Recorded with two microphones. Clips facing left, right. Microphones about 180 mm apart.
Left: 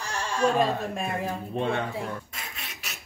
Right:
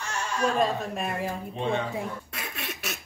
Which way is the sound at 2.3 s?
65° right (ahead or behind).